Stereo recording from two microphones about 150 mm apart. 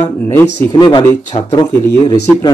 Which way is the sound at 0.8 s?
30° left (ahead or behind).